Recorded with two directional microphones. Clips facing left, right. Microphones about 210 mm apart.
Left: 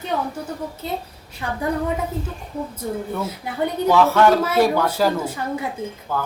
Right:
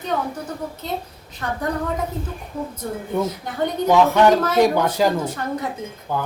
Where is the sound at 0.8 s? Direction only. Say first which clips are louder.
Even; 5° left (ahead or behind).